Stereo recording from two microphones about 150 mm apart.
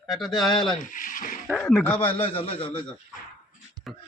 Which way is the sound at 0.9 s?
65° left (ahead or behind).